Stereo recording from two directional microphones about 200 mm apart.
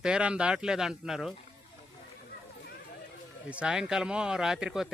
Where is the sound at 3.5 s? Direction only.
5° right (ahead or behind).